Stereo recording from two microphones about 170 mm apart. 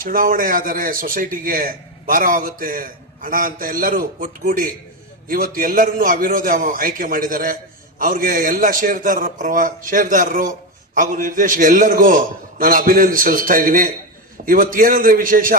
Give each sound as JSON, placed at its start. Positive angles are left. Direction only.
{"t": 0.0, "sound": "a man's voice", "side_deg": -55}